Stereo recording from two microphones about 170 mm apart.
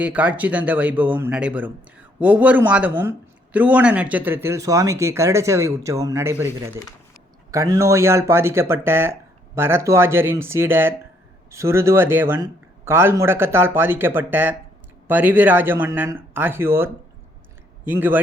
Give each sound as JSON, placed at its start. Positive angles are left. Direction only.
{"t": 0.0, "sound": "speech", "side_deg": -10}
{"t": 7.5, "sound": "speech", "side_deg": -20}